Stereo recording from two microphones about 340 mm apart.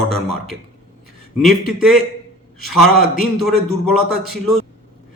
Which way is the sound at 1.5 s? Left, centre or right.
Centre.